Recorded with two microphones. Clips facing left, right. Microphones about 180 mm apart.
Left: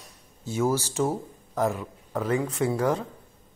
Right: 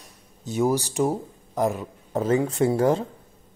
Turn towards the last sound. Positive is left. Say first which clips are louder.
# right 4 dB
turn(degrees=-30)  # may be behind; listen again after turning